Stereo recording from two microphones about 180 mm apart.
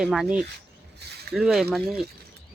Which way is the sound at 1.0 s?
70° right (ahead or behind).